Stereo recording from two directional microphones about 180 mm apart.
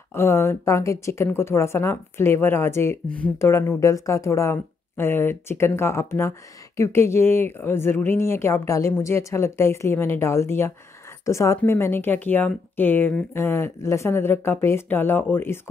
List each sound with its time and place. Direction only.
0.1 s a woman's voice: 15° left (ahead or behind)